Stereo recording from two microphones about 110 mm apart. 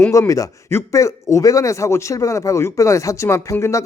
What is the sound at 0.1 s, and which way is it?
A man's voice, 30° left (ahead or behind).